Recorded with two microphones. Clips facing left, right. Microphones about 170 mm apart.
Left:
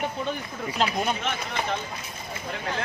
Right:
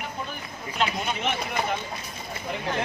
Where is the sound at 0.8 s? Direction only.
35° left (ahead or behind).